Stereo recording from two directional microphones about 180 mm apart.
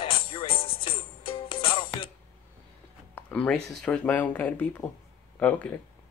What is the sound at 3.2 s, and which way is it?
Speech, 5° left (ahead or behind).